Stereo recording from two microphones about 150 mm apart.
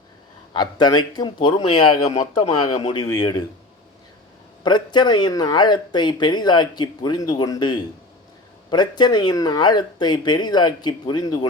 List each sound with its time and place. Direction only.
0.5 s speech: 30° left (ahead or behind)
2.7 s speech: 30° left (ahead or behind)
4.6 s speech: 30° left (ahead or behind)